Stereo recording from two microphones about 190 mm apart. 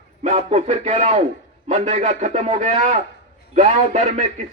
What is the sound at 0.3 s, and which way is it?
Speech, 35° right (ahead or behind).